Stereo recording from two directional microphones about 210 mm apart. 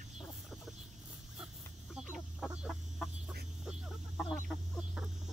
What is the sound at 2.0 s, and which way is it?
Chicken, 5° right (ahead or behind).